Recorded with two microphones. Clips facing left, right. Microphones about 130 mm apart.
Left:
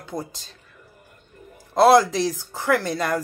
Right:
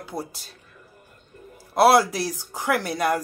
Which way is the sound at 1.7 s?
10° right (ahead or behind).